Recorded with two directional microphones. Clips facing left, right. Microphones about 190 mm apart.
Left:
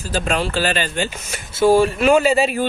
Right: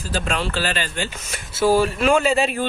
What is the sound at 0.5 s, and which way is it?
Speech, 15° left (ahead or behind).